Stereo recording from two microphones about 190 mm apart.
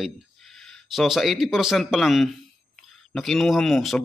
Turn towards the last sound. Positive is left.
turn(degrees=0)  # may be behind; listen again after turning